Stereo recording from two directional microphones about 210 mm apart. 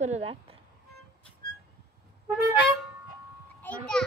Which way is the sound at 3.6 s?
5° left (ahead or behind).